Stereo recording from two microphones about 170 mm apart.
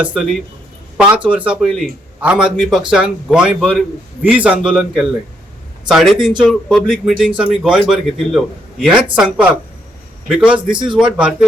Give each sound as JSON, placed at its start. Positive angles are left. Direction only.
{"t": 0.0, "sound": "a man's voice", "side_deg": -5}
{"t": 10.7, "sound": "speech", "side_deg": -25}
{"t": 10.9, "sound": "a man's voice", "side_deg": -5}